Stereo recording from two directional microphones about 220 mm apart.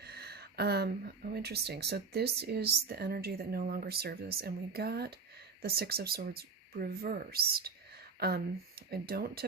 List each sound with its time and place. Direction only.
0.0 s speech: 45° right (ahead or behind)